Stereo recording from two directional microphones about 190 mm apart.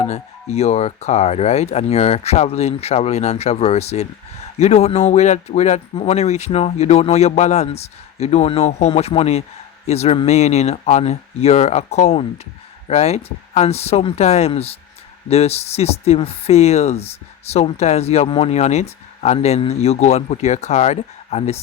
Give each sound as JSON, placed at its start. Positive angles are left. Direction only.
{"t": 0.0, "sound": "speech", "side_deg": 35}